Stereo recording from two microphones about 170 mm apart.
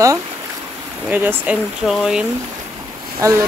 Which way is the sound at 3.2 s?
20° right (ahead or behind).